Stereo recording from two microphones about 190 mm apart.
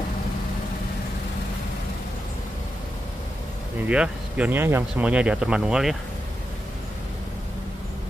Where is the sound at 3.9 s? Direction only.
5° right (ahead or behind).